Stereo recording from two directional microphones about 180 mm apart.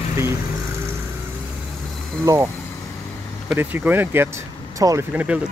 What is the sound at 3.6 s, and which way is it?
Speech, 10° right (ahead or behind).